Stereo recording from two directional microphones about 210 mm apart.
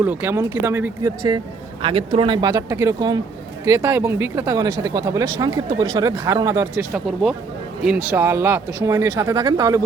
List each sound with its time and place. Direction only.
0.0 s speech: 10° right (ahead or behind)
6.9 s speech: centre (ahead or behind); by 9.8 s 15° right (ahead or behind)